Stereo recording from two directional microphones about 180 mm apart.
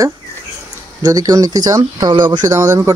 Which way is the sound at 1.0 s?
20° right (ahead or behind).